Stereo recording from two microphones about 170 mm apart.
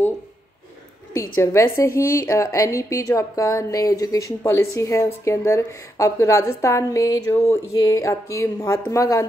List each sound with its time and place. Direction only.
1.4 s a woman's voice: 15° left (ahead or behind)